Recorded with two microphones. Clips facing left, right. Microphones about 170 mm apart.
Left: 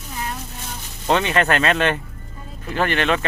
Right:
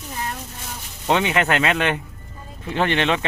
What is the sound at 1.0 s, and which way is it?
Speech, 15° right (ahead or behind).